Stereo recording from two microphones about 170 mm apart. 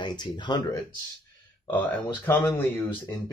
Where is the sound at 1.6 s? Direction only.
10° left (ahead or behind).